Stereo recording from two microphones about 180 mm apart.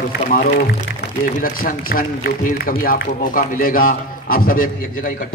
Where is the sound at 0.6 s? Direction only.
60° left (ahead or behind).